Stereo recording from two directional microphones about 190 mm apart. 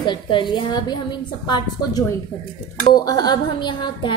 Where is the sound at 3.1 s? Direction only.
20° left (ahead or behind).